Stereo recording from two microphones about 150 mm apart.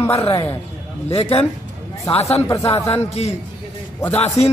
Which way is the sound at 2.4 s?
20° left (ahead or behind).